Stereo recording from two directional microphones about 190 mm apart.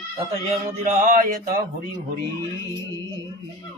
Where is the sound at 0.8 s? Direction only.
45° right (ahead or behind).